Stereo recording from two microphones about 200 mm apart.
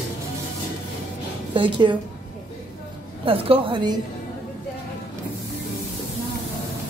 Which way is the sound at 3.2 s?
30° right (ahead or behind).